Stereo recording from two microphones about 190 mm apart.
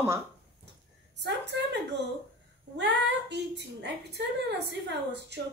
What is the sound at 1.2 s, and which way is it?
Speech, 65° right (ahead or behind).